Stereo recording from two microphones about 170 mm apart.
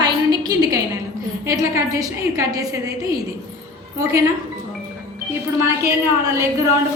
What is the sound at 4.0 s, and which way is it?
Speech, 15° right (ahead or behind).